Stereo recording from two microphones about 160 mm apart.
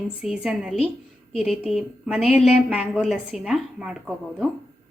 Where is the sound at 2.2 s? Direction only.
40° left (ahead or behind).